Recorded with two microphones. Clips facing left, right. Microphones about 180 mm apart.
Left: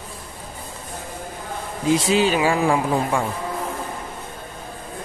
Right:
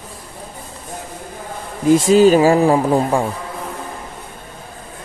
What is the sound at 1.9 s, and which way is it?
Speech, 45° right (ahead or behind).